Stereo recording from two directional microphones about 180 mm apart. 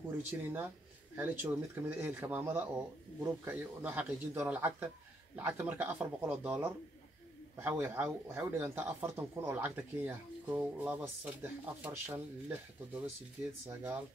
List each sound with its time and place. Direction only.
0.3 s speech: 10° right (ahead or behind)